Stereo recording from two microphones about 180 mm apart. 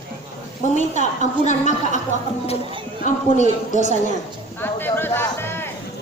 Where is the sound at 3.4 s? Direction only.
45° left (ahead or behind).